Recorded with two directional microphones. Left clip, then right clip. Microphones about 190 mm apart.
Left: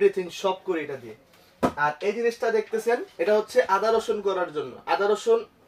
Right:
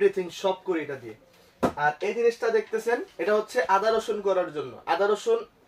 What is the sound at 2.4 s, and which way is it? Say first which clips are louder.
Speech: left 1 dB; 10° right (ahead or behind).